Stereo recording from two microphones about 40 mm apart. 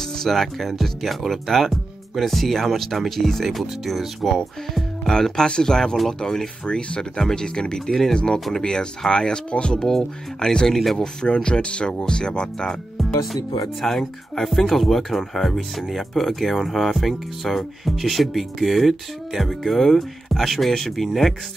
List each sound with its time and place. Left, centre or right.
0.0 s speech: centre
5.2 s speech: centre
8.1 s speech: left
9.8 s speech: centre
10.7 s speech: centre
11.2 s speech: left
13.0 s speech: centre